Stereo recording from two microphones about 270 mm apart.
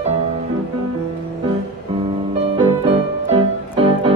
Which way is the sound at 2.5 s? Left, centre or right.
Centre.